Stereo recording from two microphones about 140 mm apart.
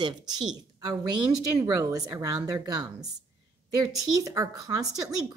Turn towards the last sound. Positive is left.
turn(degrees=-25)  # may be behind; listen again after turning